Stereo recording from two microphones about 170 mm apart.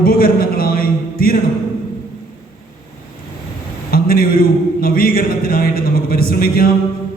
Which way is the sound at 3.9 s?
60° left (ahead or behind).